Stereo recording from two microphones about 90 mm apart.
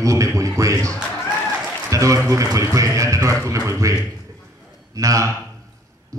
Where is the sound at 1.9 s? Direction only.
35° right (ahead or behind).